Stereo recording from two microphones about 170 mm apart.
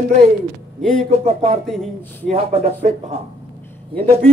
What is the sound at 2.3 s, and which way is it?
Speech, 35° right (ahead or behind).